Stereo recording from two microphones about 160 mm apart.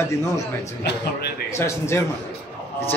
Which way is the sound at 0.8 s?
90° left.